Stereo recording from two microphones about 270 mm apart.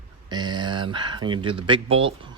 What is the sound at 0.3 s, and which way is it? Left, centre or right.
Speech, centre.